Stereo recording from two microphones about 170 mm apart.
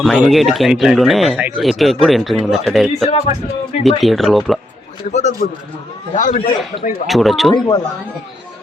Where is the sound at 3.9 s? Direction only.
Centre (ahead or behind).